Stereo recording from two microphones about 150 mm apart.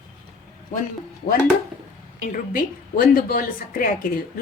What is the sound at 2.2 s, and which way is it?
A woman's voice, 65° left (ahead or behind).